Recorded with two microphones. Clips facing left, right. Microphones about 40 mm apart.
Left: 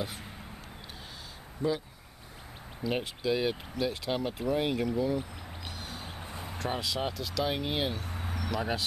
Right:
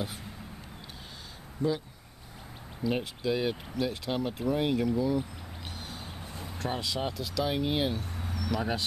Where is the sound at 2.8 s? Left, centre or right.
Centre.